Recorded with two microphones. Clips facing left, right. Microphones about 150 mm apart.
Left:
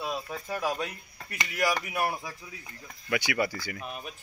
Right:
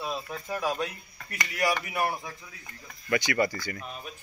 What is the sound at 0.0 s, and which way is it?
Speech, 5° left (ahead or behind).